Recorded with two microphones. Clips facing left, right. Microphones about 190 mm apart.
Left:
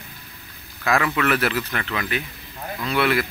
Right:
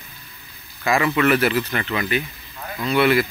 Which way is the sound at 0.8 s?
Centre (ahead or behind).